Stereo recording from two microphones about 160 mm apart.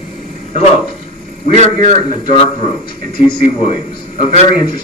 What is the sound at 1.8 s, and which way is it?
Speech, 30° left (ahead or behind).